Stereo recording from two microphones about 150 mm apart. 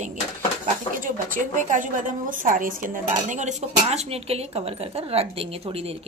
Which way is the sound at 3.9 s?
45° right (ahead or behind).